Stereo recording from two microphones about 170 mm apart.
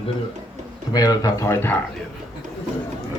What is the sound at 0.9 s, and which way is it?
Speech, 25° left (ahead or behind).